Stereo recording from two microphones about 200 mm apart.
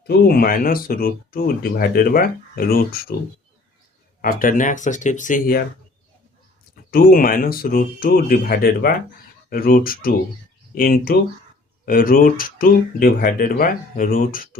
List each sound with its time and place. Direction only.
0.1 s speech: 50° left (ahead or behind)
4.2 s speech: 45° left (ahead or behind)
6.9 s speech: 45° left (ahead or behind)